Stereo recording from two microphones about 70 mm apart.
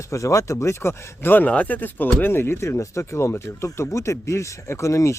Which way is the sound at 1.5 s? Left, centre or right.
Left.